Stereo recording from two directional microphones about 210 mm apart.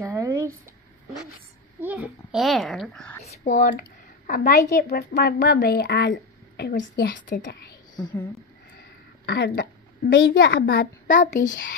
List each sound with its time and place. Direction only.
0.0 s a sound: 15° right (ahead or behind)
1.8 s a child's voice: 10° right (ahead or behind)
3.3 s a woman's voice: 35° left (ahead or behind)
7.4 s a woman's voice: 50° left (ahead or behind)
7.9 s speech: 20° left (ahead or behind)
9.2 s a woman's voice: 50° left (ahead or behind)